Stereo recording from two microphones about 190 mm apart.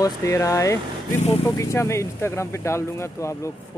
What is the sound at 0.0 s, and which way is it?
Speech, 15° left (ahead or behind).